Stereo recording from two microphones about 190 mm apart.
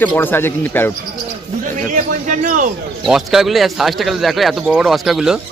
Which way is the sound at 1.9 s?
40° right (ahead or behind).